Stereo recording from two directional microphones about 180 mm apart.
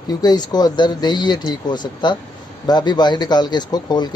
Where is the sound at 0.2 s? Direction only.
20° left (ahead or behind).